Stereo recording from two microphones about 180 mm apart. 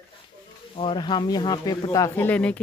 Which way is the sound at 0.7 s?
30° left (ahead or behind).